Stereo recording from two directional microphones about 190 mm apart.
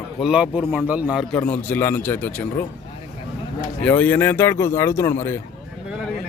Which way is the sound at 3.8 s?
10° left (ahead or behind).